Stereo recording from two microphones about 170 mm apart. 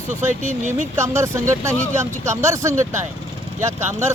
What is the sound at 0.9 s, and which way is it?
Speech, 15° right (ahead or behind).